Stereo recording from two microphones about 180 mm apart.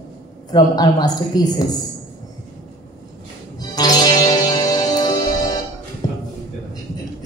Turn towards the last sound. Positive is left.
turn(degrees=20)  # may be behind; listen again after turning